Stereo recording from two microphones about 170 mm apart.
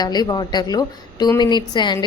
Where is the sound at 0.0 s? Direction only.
25° left (ahead or behind).